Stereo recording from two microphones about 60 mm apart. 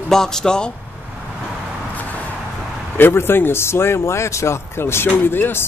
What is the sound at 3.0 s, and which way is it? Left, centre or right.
Speech, left.